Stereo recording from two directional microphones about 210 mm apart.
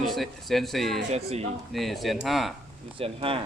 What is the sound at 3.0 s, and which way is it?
Speech, 25° right (ahead or behind).